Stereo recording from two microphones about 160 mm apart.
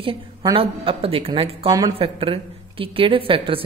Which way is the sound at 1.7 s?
25° right (ahead or behind).